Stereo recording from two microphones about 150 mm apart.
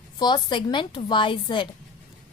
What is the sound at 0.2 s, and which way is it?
A woman's voice, 30° left (ahead or behind).